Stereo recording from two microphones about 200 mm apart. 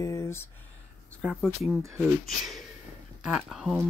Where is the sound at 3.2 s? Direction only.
Centre (ahead or behind).